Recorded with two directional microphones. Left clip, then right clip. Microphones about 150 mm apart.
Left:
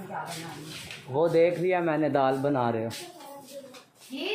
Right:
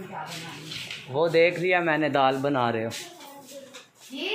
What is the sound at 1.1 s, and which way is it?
Speech, 5° left (ahead or behind).